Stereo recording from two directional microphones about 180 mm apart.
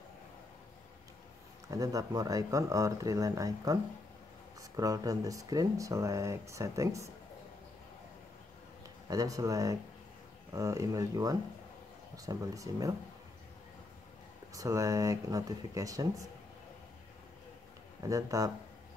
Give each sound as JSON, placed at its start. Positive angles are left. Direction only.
{"t": 1.7, "sound": "speech", "side_deg": -20}
{"t": 8.8, "sound": "speech", "side_deg": -20}
{"t": 14.5, "sound": "speech", "side_deg": -20}
{"t": 18.0, "sound": "speech", "side_deg": -20}